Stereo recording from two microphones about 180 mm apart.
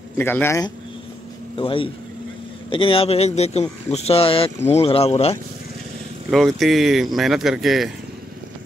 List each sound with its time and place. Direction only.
0.2 s speech: 10° left (ahead or behind)
1.6 s speech: 30° left (ahead or behind)
6.3 s speech: centre (ahead or behind)